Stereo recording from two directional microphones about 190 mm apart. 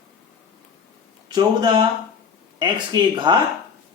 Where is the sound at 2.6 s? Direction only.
25° right (ahead or behind).